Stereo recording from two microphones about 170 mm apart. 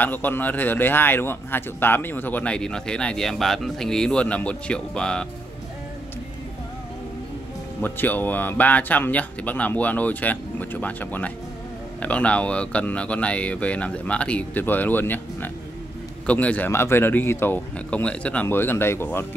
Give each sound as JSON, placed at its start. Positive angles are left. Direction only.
{"t": 0.0, "sound": "speech", "side_deg": 10}
{"t": 7.8, "sound": "speech", "side_deg": 10}